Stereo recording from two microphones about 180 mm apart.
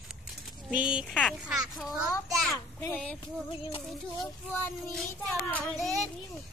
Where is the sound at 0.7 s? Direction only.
5° right (ahead or behind).